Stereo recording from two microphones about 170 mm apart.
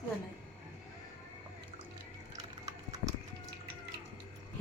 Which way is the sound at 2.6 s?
20° right (ahead or behind).